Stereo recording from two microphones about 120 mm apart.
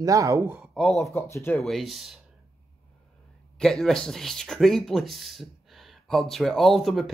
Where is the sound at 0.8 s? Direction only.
5° left (ahead or behind).